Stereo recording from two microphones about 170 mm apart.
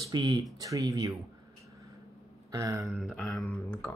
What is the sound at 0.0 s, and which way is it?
Speech, 25° right (ahead or behind).